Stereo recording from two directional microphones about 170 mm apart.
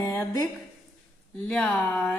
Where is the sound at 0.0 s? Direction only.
15° left (ahead or behind).